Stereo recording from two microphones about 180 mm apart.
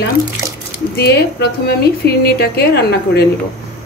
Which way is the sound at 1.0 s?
65° left (ahead or behind).